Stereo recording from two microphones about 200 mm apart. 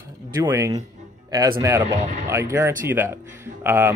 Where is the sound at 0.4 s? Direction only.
15° right (ahead or behind).